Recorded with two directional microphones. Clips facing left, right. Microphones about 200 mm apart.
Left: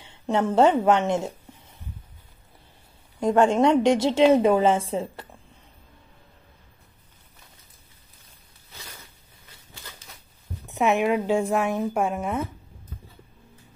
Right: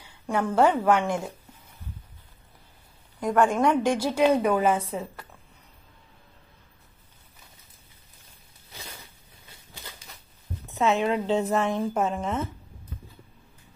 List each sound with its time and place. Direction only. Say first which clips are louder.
0.0 s a woman's voice: left 3 dB; 25° left (ahead or behind)
3.2 s a woman's voice: left 3 dB; 25° left (ahead or behind)
10.7 s speech: left 2 dB; 15° left (ahead or behind)